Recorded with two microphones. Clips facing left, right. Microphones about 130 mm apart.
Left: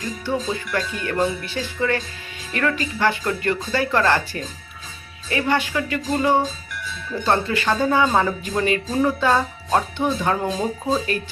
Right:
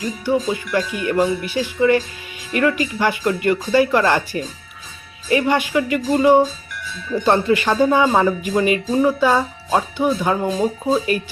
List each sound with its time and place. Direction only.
0.3 s speech: 10° right (ahead or behind)